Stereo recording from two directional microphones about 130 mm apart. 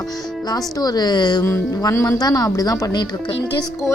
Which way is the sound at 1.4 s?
20° left (ahead or behind).